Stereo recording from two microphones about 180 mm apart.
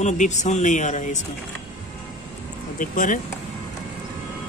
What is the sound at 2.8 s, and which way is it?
Speech, 45° left (ahead or behind).